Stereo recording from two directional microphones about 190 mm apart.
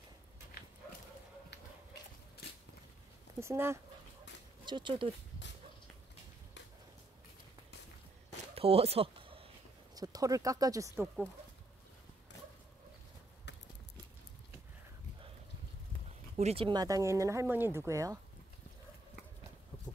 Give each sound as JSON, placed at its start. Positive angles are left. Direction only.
{"t": 3.3, "sound": "speech", "side_deg": -15}
{"t": 4.6, "sound": "speech", "side_deg": -25}
{"t": 8.5, "sound": "a sound", "side_deg": -30}
{"t": 9.9, "sound": "speech", "side_deg": -20}
{"t": 13.5, "sound": "a sound", "side_deg": 70}
{"t": 16.3, "sound": "speech", "side_deg": -30}